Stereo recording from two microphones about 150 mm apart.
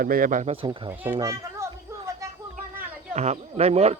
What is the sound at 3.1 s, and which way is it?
Speech, 45° right (ahead or behind).